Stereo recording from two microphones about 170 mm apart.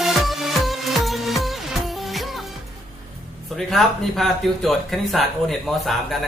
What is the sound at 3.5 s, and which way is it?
Speech, centre (ahead or behind).